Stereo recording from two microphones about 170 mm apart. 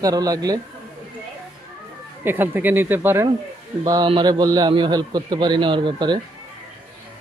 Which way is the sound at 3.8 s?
25° right (ahead or behind).